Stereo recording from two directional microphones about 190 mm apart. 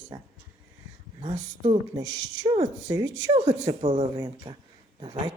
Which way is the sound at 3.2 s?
35° right (ahead or behind).